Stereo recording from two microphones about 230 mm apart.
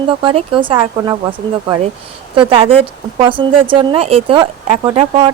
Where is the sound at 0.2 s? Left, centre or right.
Right.